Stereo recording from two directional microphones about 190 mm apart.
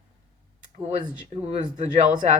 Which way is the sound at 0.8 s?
30° right (ahead or behind).